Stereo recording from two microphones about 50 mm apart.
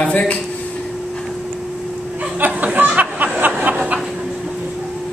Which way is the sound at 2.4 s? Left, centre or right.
Right.